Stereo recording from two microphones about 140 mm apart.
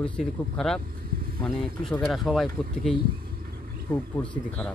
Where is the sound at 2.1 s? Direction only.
Centre (ahead or behind).